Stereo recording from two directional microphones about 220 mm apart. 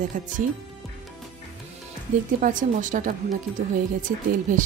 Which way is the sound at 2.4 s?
35° right (ahead or behind).